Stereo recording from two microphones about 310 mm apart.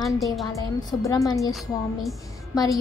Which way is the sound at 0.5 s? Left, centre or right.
Centre.